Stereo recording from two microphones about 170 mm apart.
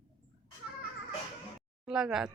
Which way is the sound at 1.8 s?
5° right (ahead or behind).